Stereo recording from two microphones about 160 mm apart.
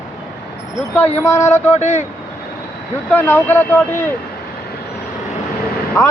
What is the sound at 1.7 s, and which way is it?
Speech, 45° left (ahead or behind).